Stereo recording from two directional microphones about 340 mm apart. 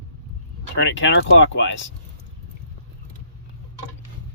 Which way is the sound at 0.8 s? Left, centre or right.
Left.